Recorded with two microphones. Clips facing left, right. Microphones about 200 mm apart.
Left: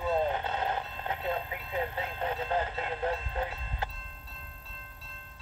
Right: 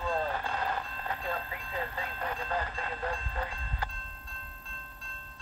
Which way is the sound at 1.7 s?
20° left (ahead or behind).